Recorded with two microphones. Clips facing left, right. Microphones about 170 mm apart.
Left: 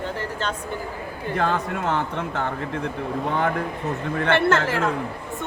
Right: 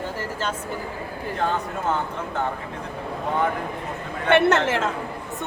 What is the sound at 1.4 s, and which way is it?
Speech, 90° left.